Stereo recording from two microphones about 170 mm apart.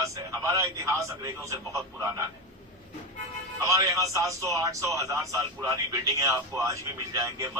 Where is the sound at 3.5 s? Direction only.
20° right (ahead or behind).